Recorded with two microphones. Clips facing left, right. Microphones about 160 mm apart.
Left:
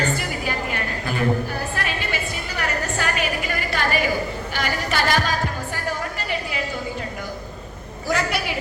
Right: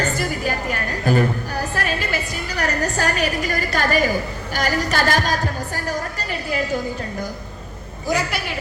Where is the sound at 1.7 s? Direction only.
40° right (ahead or behind).